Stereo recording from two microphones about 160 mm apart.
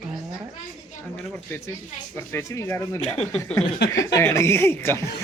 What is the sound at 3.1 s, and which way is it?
Speech, 45° left (ahead or behind).